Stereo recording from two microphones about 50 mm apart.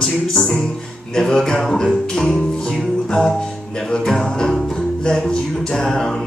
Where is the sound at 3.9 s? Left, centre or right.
Centre.